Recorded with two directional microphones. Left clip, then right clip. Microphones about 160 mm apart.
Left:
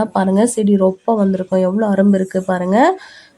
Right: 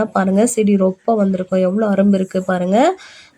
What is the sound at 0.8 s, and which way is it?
Speech, 5° right (ahead or behind).